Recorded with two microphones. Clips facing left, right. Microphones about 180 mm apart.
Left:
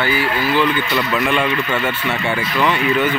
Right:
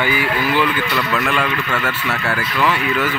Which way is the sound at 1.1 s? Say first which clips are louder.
Left 3 dB; centre (ahead or behind).